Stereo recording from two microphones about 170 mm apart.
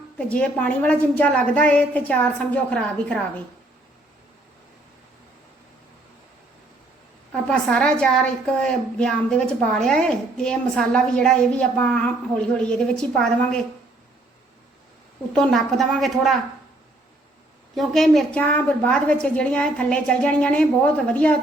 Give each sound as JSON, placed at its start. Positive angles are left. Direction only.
{"t": 0.2, "sound": "a woman's voice", "side_deg": 5}
{"t": 7.4, "sound": "a woman's voice", "side_deg": 5}
{"t": 15.3, "sound": "a woman's voice", "side_deg": 5}
{"t": 17.7, "sound": "a woman's voice", "side_deg": 0}